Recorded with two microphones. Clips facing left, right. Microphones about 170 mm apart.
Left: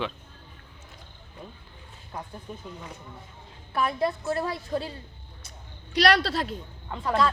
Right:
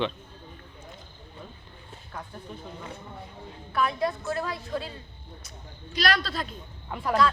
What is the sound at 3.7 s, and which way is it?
A woman's voice, 30° left (ahead or behind).